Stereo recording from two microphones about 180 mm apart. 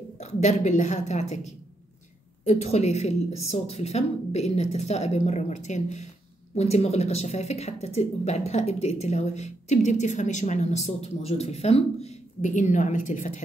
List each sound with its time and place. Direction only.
0.2 s a woman's voice: 40° left (ahead or behind)